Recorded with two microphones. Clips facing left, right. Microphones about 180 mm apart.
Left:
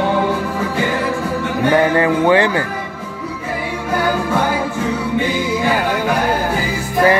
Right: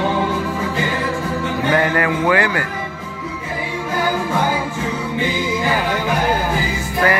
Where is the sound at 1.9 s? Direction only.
25° left (ahead or behind).